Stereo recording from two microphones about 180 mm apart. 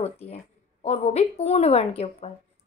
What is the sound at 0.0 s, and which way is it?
A woman's voice, 35° left (ahead or behind).